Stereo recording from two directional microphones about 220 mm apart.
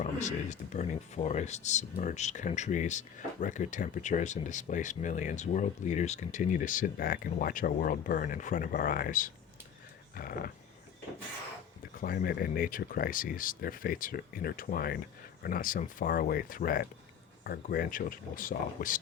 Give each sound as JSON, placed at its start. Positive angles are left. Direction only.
{"t": 0.0, "sound": "speech", "side_deg": 35}
{"t": 11.9, "sound": "speech", "side_deg": 45}